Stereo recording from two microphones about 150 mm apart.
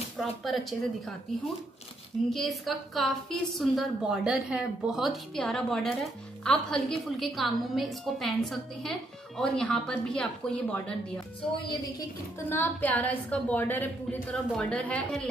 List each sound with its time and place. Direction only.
0.4 s a woman's voice: centre (ahead or behind)
2.3 s a woman's voice: centre (ahead or behind)
11.6 s a woman's voice: 25° left (ahead or behind)
12.4 s a woman's voice: 15° left (ahead or behind)